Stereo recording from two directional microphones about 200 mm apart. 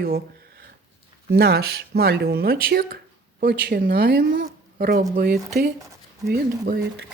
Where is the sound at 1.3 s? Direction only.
55° right (ahead or behind).